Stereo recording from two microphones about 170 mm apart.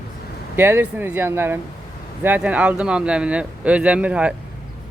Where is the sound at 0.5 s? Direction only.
15° right (ahead or behind).